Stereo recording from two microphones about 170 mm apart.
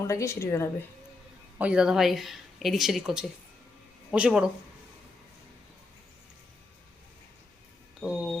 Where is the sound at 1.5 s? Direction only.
5° right (ahead or behind).